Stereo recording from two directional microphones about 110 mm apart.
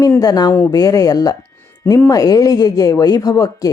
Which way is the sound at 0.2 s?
35° left (ahead or behind).